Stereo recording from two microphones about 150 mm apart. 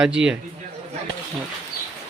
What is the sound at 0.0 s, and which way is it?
Speech, 5° right (ahead or behind).